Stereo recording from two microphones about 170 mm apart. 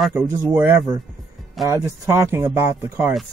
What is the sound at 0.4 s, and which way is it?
Speech, 10° right (ahead or behind).